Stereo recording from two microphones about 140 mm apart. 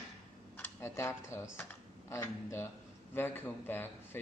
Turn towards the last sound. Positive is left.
turn(degrees=15)  # may be behind; listen again after turning